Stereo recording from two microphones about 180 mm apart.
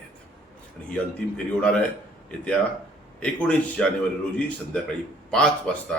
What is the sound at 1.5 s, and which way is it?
Speech, 5° left (ahead or behind).